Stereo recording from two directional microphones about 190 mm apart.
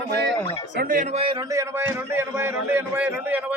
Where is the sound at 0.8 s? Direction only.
45° right (ahead or behind).